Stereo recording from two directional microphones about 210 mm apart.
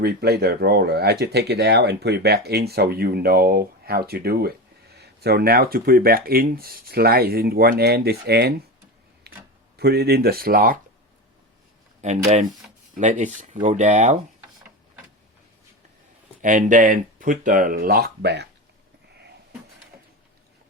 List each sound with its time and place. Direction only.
0.0 s speech: 50° right (ahead or behind)
9.7 s speech: 50° right (ahead or behind)
12.0 s speech: 35° right (ahead or behind)
16.4 s speech: 40° right (ahead or behind)